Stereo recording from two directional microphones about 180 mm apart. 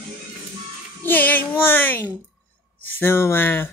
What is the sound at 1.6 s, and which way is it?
Speech, 10° left (ahead or behind).